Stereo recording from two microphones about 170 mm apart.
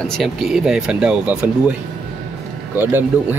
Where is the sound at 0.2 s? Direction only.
Centre (ahead or behind).